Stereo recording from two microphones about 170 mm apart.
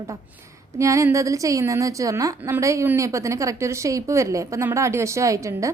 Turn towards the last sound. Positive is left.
turn(degrees=-20)  # may be behind; listen again after turning